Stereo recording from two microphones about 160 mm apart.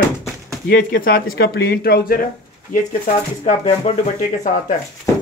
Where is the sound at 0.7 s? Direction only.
80° left.